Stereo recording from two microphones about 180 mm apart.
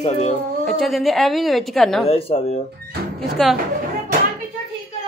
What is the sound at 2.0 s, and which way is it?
Speech, 30° left (ahead or behind).